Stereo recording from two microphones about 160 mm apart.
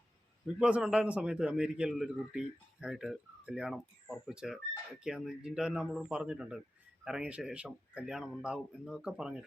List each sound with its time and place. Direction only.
0.4 s a man's voice: 5° right (ahead or behind)